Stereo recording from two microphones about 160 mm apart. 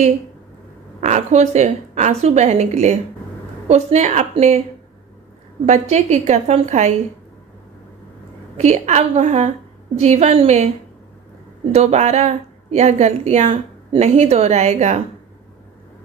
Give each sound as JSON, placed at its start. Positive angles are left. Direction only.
{"t": 1.0, "sound": "a woman's voice", "side_deg": -45}
{"t": 5.7, "sound": "a woman's voice", "side_deg": -45}
{"t": 8.5, "sound": "a woman's voice", "side_deg": -45}
{"t": 11.7, "sound": "a woman's voice", "side_deg": -40}